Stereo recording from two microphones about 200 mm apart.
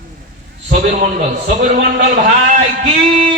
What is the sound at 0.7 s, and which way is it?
A man's voice, 35° right (ahead or behind).